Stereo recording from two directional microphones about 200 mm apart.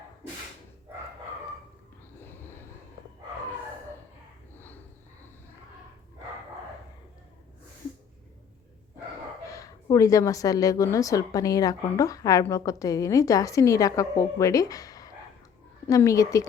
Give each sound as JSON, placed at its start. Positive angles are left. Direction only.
{"t": 9.5, "sound": "a woman's voice", "side_deg": 15}